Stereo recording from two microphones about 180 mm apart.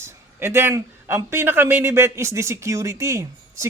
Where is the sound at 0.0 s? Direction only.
15° right (ahead or behind).